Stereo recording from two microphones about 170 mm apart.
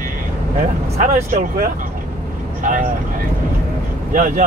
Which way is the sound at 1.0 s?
45° right (ahead or behind).